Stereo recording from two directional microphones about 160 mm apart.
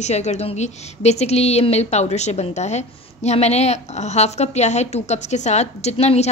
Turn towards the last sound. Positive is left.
turn(degrees=40)  # may be behind; listen again after turning